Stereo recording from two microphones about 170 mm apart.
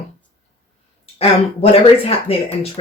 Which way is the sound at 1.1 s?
35° left (ahead or behind).